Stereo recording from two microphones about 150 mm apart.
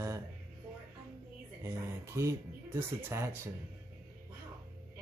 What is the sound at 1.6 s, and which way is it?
Speech, 20° right (ahead or behind).